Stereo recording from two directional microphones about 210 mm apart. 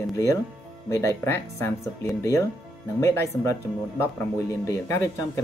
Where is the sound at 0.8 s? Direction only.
15° left (ahead or behind).